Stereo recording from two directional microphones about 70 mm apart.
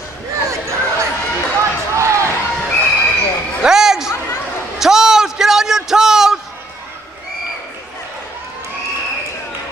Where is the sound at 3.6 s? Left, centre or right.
Centre.